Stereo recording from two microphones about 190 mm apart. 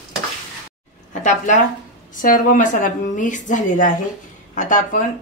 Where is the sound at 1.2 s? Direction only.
40° left (ahead or behind).